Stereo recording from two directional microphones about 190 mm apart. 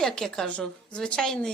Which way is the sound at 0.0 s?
5° left (ahead or behind).